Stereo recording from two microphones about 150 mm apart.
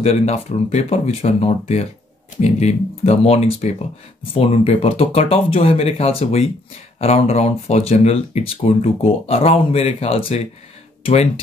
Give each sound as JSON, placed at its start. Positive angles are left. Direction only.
{"t": 0.0, "sound": "speech", "side_deg": 45}